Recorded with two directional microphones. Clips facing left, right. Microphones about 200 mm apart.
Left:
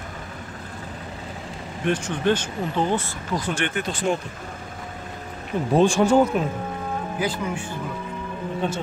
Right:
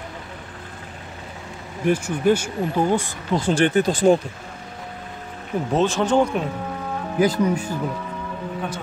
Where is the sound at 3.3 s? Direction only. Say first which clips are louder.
Right 8 dB; 30° right (ahead or behind).